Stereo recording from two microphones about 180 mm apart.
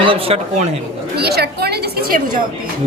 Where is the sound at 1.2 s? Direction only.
65° right (ahead or behind).